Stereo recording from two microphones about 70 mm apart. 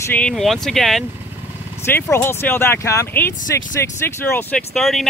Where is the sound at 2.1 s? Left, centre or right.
Left.